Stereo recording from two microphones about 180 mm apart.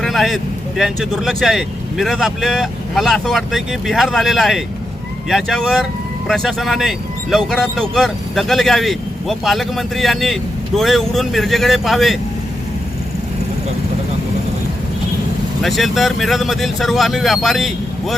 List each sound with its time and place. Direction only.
0.0 s vehicle: centre (ahead or behind)
0.8 s speech: centre (ahead or behind)
15.6 s speech: centre (ahead or behind)